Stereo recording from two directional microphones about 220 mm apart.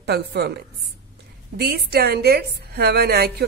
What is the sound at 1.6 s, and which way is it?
A woman's voice, 45° right (ahead or behind).